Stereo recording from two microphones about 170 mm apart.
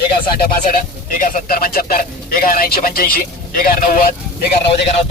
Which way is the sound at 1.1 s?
50° left (ahead or behind).